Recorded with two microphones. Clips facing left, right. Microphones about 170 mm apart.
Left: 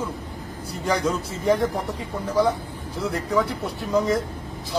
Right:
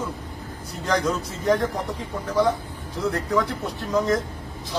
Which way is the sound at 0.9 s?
10° left (ahead or behind).